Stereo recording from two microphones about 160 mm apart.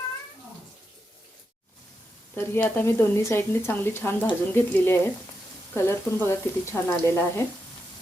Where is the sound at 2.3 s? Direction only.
10° left (ahead or behind).